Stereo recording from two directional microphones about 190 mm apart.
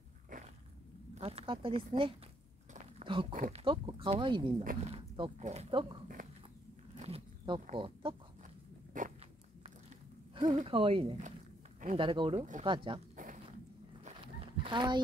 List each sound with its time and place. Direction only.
1.1 s speech: 30° right (ahead or behind)
2.7 s a sound: 30° right (ahead or behind)
3.5 s speech: 25° right (ahead or behind)
7.0 s zipper: 30° right (ahead or behind)
7.7 s speech: 25° right (ahead or behind)
9.0 s a sound: 45° right (ahead or behind)
10.4 s speech: 30° right (ahead or behind)
13.1 s zipper: 45° right (ahead or behind)
14.2 s livestock: 25° right (ahead or behind)